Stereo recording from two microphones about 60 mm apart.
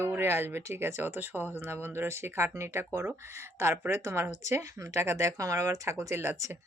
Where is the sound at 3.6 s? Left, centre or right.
Right.